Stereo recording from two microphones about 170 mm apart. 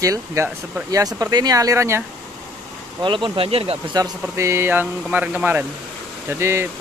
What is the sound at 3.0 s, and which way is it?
Speech, 30° right (ahead or behind).